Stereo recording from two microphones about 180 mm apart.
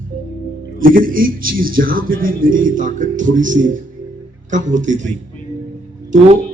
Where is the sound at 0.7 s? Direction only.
50° right (ahead or behind).